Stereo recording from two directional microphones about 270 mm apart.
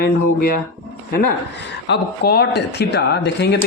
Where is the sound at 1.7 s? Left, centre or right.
Left.